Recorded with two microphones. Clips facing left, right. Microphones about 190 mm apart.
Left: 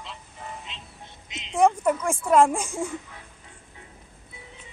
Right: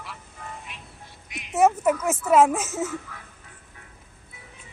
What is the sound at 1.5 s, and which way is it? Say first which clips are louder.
A child's voice: right 1 dB; 5° right (ahead or behind).